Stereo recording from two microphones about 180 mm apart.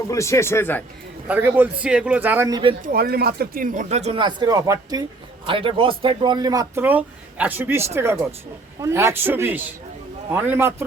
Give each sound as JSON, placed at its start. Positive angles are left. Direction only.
{"t": 0.1, "sound": "speech", "side_deg": 15}
{"t": 1.3, "sound": "speech", "side_deg": -10}
{"t": 2.5, "sound": "speech", "side_deg": -25}
{"t": 2.8, "sound": "speech", "side_deg": -55}